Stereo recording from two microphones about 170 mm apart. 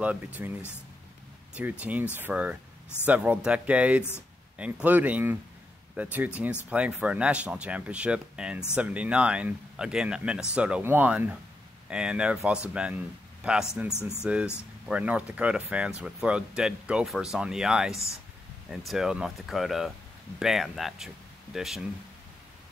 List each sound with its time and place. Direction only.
0.0 s speech: 10° right (ahead or behind)